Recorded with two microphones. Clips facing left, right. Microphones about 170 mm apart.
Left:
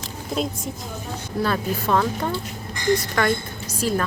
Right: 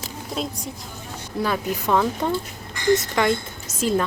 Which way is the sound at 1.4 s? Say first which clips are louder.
Even; 15° right (ahead or behind).